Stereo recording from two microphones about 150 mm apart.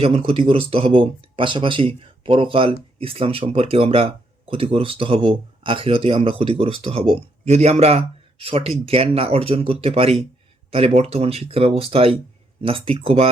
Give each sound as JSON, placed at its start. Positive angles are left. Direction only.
{"t": 0.0, "sound": "speech", "side_deg": -40}